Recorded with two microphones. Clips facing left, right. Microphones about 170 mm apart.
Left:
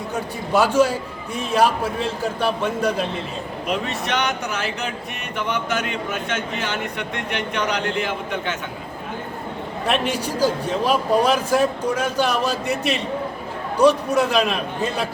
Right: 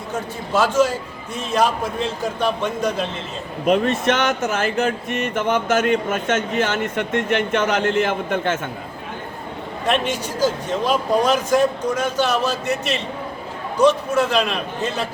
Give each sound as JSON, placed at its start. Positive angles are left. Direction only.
{"t": 0.5, "sound": "speech", "side_deg": 10}
{"t": 3.7, "sound": "speech", "side_deg": -45}
{"t": 9.8, "sound": "speech", "side_deg": 10}
{"t": 13.7, "sound": "speech", "side_deg": 10}